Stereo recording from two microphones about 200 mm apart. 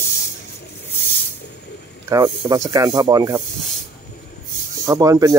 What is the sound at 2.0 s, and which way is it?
Speech, 20° right (ahead or behind).